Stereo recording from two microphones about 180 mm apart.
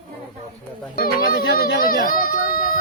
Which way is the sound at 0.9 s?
55° left (ahead or behind).